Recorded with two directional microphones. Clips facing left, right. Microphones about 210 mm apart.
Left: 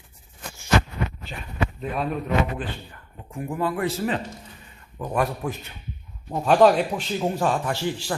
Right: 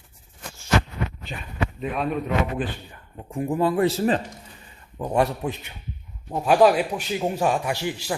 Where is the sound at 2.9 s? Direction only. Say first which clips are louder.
Right 5 dB; 20° right (ahead or behind).